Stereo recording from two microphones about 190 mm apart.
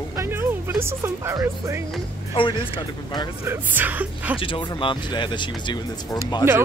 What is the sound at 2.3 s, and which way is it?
Speech, 25° left (ahead or behind).